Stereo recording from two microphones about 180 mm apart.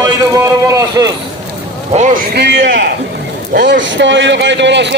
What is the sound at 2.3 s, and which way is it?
Speech, 70° right (ahead or behind).